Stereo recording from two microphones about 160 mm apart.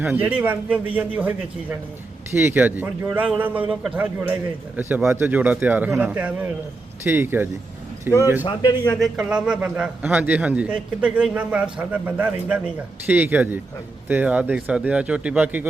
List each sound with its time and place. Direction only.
0.0 s a man's voice: 10° right (ahead or behind)
2.3 s a man's voice: 15° right (ahead or behind)
8.4 s a man's voice: 20° left (ahead or behind)
8.9 s a man's voice: centre (ahead or behind)